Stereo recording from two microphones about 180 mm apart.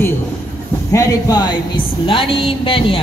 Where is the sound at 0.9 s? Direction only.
20° left (ahead or behind).